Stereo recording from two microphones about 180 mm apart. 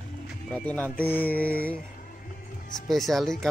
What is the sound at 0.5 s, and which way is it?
Speech, 10° left (ahead or behind).